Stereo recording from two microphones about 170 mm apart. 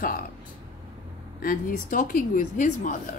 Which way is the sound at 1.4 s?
55° left (ahead or behind).